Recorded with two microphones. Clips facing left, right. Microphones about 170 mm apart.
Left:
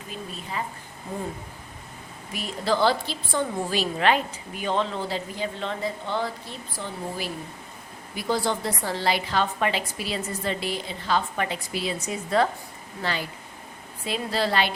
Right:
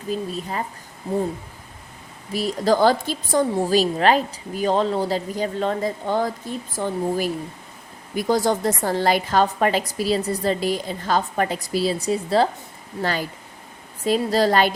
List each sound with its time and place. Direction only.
0.1 s a woman's voice: 40° right (ahead or behind)
2.3 s a woman's voice: 40° right (ahead or behind)
13.0 s a woman's voice: 45° right (ahead or behind)